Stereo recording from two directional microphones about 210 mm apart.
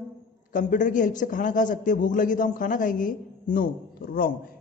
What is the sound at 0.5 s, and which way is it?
A man's voice, 40° left (ahead or behind).